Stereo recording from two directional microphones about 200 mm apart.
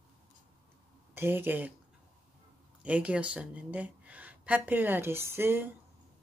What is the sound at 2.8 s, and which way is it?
Speech, 5° right (ahead or behind).